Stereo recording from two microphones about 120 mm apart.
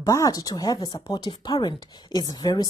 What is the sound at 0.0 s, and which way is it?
Speech, 30° left (ahead or behind).